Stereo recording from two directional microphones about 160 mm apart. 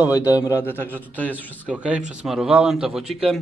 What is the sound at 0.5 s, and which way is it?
Speech, 15° left (ahead or behind).